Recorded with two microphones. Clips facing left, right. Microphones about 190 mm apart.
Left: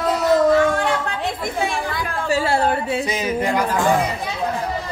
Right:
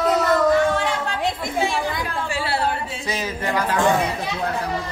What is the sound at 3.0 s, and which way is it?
Speech, 20° left (ahead or behind).